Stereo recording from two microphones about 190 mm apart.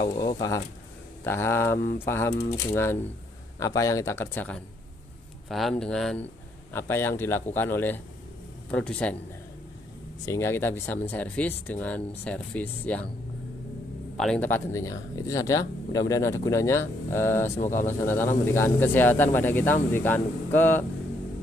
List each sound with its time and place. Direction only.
0.1 s speech: 20° left (ahead or behind)
10.2 s speech: 15° left (ahead or behind)
14.1 s speech: 5° left (ahead or behind)